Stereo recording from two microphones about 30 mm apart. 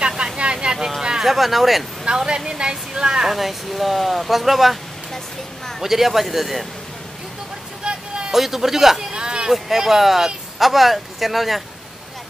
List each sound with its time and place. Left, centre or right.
0.2 s vehicle: right
1.2 s speech: centre
2.1 s a woman's voice: right
3.3 s speech: centre
5.8 s a man's voice: centre
8.3 s a man's voice: centre
9.1 s a sound: right
9.5 s speech: centre